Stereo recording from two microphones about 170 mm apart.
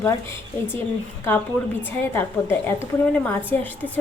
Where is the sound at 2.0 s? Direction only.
10° left (ahead or behind).